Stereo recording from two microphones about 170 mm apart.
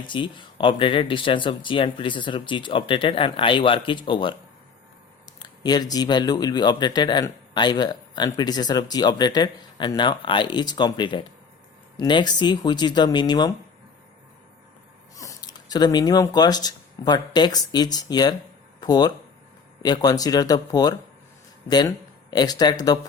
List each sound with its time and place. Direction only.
0.1 s speech: 30° left (ahead or behind)
5.4 s speech: 25° left (ahead or behind)
15.1 s speech: 20° left (ahead or behind)